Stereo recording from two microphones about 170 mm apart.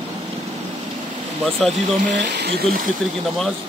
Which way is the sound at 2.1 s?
90° right.